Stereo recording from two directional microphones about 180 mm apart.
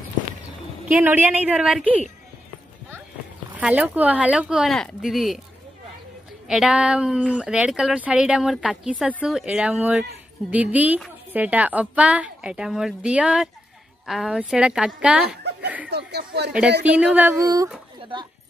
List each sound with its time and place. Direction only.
0.9 s a woman's voice: 10° right (ahead or behind)
3.5 s speech: 5° right (ahead or behind)
6.4 s a woman's voice: 5° right (ahead or behind)
15.9 s speech: 65° right (ahead or behind)
16.8 s a woman's voice: 10° right (ahead or behind)